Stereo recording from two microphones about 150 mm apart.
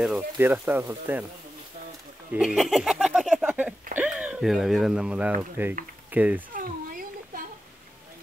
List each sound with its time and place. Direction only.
0.4 s speech: 15° right (ahead or behind)
2.3 s a sound: centre (ahead or behind)
4.0 s speech: 5° right (ahead or behind)
6.5 s cat: 65° right (ahead or behind)